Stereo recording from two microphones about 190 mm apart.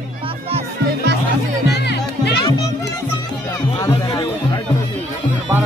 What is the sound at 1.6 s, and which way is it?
Music, 60° left (ahead or behind).